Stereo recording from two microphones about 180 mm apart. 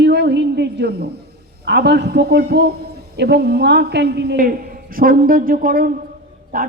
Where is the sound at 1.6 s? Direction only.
65° right (ahead or behind).